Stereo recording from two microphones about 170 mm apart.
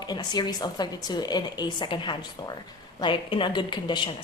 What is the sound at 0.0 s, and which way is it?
A woman's voice, 25° left (ahead or behind).